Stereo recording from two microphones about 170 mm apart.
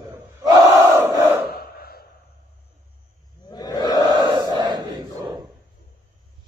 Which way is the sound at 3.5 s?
25° left (ahead or behind).